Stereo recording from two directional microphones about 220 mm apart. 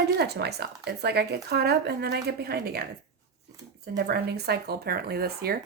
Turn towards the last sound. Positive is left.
turn(degrees=-45)  # may be behind; listen again after turning